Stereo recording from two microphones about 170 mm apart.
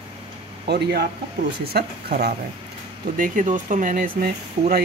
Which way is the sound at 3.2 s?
50° right (ahead or behind).